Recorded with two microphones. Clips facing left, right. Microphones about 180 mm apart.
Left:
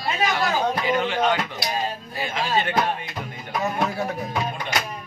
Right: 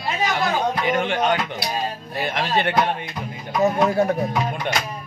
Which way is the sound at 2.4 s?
65° right (ahead or behind).